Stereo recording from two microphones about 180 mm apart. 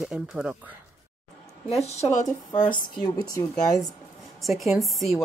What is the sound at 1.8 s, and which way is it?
Speech, 40° left (ahead or behind).